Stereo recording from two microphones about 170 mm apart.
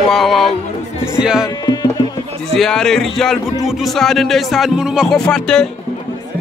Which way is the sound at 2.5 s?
Centre (ahead or behind).